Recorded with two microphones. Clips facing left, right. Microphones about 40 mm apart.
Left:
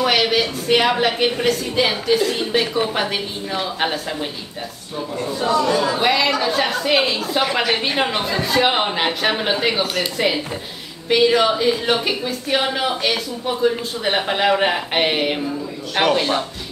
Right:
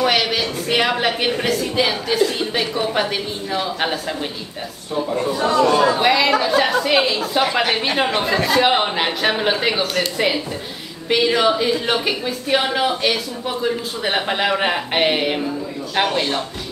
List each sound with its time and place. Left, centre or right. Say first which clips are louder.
0.0 s speech: left 1 dB; centre
5.4 s speech: right 2 dB; right
6.0 s speech: right 2 dB; centre